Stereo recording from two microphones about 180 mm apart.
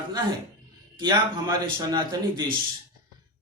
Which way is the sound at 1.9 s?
25° right (ahead or behind).